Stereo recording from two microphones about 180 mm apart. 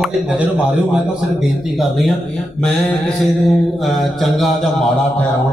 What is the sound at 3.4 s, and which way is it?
Speech, centre (ahead or behind).